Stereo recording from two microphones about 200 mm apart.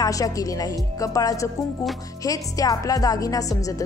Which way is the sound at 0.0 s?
15° left (ahead or behind).